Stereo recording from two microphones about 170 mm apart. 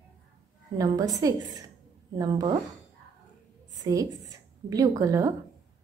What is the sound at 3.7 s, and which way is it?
A woman's voice, 20° right (ahead or behind).